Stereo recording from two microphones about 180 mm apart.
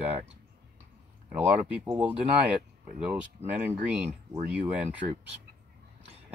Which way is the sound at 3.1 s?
10° right (ahead or behind).